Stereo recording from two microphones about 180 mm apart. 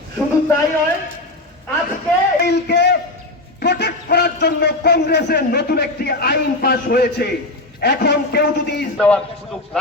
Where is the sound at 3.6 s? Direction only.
70° left (ahead or behind).